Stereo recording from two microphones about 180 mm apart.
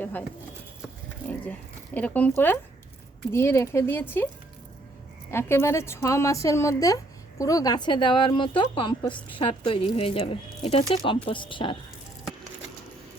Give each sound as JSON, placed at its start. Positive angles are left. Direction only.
{"t": 0.0, "sound": "speech", "side_deg": 10}
{"t": 1.3, "sound": "speech", "side_deg": 10}
{"t": 5.3, "sound": "a woman's voice", "side_deg": 15}